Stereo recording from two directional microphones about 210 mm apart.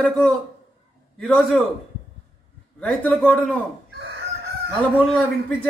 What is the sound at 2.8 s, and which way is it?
Speech, 5° left (ahead or behind).